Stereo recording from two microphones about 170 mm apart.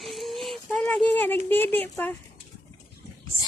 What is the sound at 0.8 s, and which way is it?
Speech, 10° left (ahead or behind).